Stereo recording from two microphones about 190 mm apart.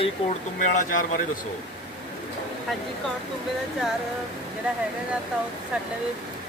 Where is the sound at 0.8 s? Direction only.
45° left (ahead or behind).